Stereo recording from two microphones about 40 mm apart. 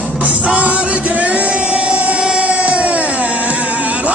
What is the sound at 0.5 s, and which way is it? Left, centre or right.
Music, right.